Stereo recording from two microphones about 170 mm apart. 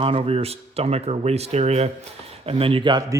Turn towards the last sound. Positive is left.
turn(degrees=-25)  # may be behind; listen again after turning